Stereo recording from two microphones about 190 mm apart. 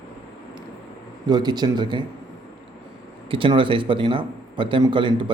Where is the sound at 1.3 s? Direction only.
20° right (ahead or behind).